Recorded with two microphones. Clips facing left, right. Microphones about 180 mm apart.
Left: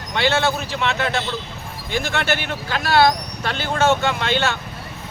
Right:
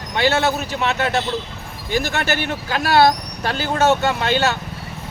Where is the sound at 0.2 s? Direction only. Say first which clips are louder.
Right 1 dB; 40° right (ahead or behind).